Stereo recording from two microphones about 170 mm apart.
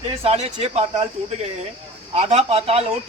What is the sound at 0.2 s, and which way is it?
Speech, 35° right (ahead or behind).